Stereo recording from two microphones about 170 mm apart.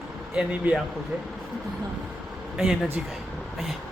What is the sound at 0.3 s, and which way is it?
Speech, 5° right (ahead or behind).